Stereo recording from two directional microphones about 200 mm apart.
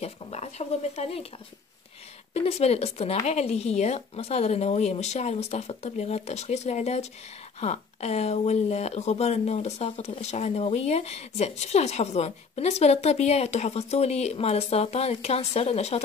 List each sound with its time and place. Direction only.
0.0 s speech: 35° left (ahead or behind)
2.3 s speech: 30° left (ahead or behind)